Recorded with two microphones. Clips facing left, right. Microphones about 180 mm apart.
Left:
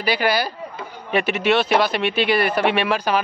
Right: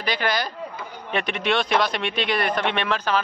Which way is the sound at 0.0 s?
10° left (ahead or behind).